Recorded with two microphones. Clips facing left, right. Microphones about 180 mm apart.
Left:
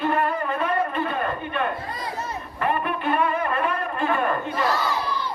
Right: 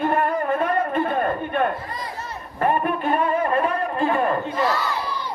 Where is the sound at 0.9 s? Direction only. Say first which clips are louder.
Right 4 dB; 50° right (ahead or behind); by 4.3 s 35° right (ahead or behind).